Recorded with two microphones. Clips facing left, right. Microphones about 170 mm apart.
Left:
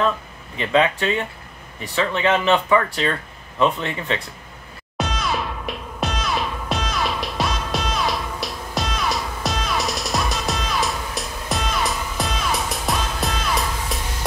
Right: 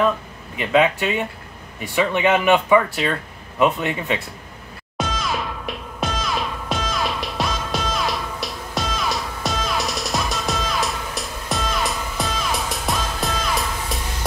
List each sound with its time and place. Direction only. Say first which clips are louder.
0.6 s speech: right 1 dB; 10° right (ahead or behind)
4.9 s music: left 1 dB; centre (ahead or behind)